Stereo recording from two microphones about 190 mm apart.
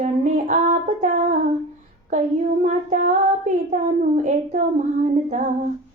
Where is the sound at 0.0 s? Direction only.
40° right (ahead or behind).